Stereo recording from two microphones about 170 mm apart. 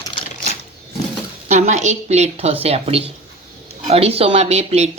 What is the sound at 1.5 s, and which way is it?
Speech, 45° right (ahead or behind).